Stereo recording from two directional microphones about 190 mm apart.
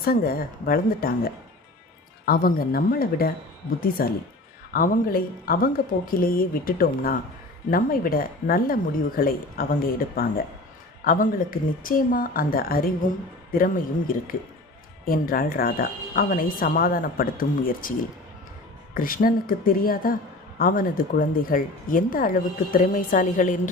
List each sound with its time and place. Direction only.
0.0 s speech: 50° left (ahead or behind)
15.0 s speech: 50° left (ahead or behind)
18.9 s speech: 45° left (ahead or behind)